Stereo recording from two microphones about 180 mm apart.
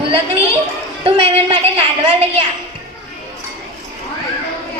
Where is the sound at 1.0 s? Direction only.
30° right (ahead or behind).